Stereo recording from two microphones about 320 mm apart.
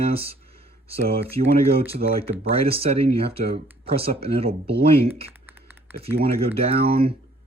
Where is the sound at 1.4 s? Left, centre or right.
Centre.